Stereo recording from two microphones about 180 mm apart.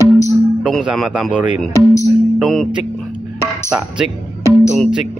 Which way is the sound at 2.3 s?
Centre (ahead or behind).